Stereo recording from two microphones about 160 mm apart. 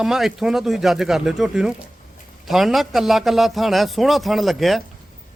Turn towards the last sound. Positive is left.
turn(degrees=0)  # may be behind; listen again after turning